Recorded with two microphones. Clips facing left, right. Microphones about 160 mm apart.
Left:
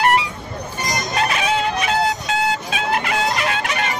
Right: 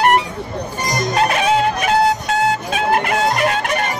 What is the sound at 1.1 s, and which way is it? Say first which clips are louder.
Music: right 4 dB; 50° right (ahead or behind).